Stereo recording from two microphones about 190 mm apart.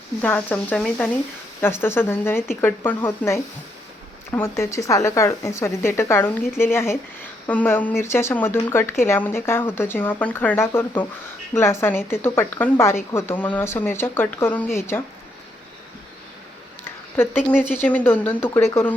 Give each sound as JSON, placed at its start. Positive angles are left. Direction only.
{"t": 0.2, "sound": "a woman's voice", "side_deg": 5}
{"t": 17.7, "sound": "a woman's voice", "side_deg": 10}